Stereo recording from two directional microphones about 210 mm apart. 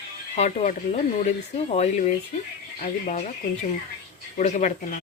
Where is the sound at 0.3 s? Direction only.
35° left (ahead or behind).